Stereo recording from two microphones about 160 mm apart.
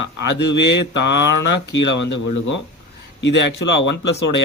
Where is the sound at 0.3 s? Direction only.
90° left.